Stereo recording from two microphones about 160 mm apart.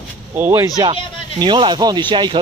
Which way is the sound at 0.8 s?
30° right (ahead or behind).